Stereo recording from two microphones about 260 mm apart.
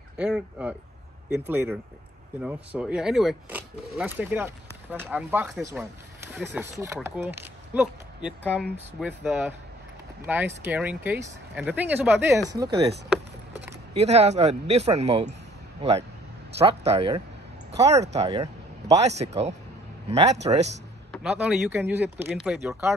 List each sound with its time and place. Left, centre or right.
0.2 s speech: centre
13.9 s a man's voice: right
21.1 s speech: centre